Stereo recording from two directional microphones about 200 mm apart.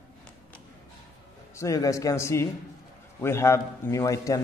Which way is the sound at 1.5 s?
15° left (ahead or behind).